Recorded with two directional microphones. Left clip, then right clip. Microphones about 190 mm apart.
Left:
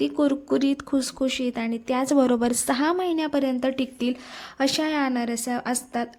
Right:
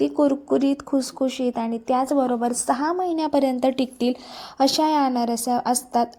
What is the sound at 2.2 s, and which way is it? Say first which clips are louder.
Speech: left 1 dB; 30° left (ahead or behind).